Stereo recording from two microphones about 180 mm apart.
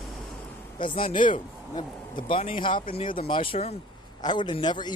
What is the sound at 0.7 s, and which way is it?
Speech, 25° left (ahead or behind).